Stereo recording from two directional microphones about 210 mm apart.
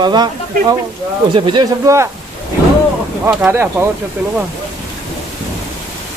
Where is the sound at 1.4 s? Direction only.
25° right (ahead or behind).